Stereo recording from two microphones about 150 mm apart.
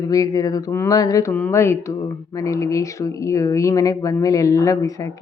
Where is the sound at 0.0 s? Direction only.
25° left (ahead or behind).